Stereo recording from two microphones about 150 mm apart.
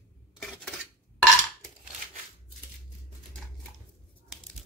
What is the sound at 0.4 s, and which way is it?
Cutlery, centre (ahead or behind).